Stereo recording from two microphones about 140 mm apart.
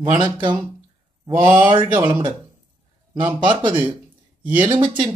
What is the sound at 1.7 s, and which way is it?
Speech, 35° right (ahead or behind).